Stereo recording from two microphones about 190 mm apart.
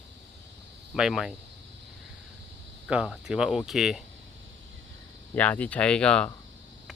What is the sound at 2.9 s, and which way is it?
Speech, 5° right (ahead or behind).